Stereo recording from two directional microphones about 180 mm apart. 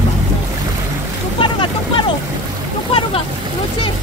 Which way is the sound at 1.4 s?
30° left (ahead or behind).